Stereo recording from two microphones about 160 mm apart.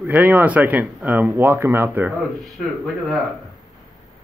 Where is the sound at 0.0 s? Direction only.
10° right (ahead or behind).